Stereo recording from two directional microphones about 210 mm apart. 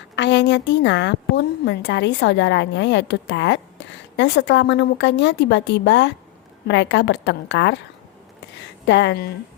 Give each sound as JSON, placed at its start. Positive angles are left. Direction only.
{"t": 0.2, "sound": "a woman's voice", "side_deg": 55}
{"t": 8.9, "sound": "a woman's voice", "side_deg": 55}